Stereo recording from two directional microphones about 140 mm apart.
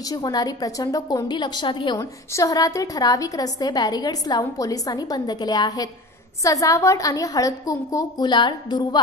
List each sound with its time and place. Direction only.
0.0 s a woman's voice: 25° left (ahead or behind)
2.0 s a woman's voice: 25° left (ahead or behind)